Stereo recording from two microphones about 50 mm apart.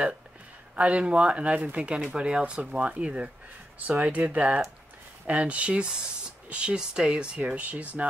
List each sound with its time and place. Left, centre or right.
0.7 s speech: right